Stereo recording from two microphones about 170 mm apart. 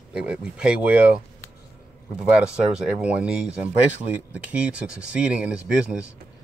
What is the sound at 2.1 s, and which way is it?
Speech, 5° right (ahead or behind).